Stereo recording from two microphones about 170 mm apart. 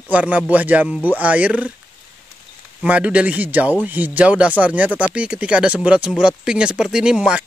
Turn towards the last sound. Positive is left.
turn(degrees=-5)  # may be behind; listen again after turning